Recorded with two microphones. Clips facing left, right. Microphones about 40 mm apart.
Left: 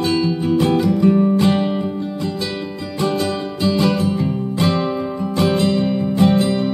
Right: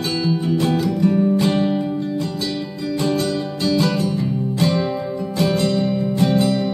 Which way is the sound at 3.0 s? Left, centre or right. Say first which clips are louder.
Left 2 dB; centre.